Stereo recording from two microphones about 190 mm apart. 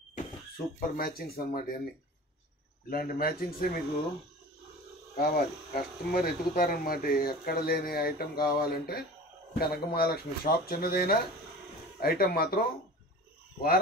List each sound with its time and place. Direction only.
0.7 s speech: 50° left (ahead or behind)
2.9 s speech: 50° left (ahead or behind)
5.1 s speech: 50° left (ahead or behind)